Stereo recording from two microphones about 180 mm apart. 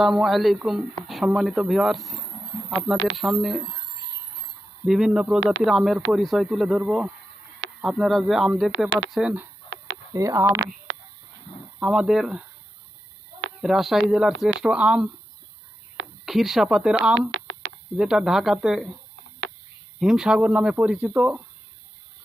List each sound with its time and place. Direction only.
0.0 s speech: centre (ahead or behind)
4.9 s speech: centre (ahead or behind)
10.1 s speech: 20° right (ahead or behind)
11.8 s speech: 5° right (ahead or behind)
13.6 s speech: centre (ahead or behind)
16.2 s speech: centre (ahead or behind)
20.0 s speech: 5° right (ahead or behind)